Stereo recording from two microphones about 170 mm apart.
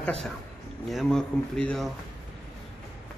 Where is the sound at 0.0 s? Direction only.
5° left (ahead or behind).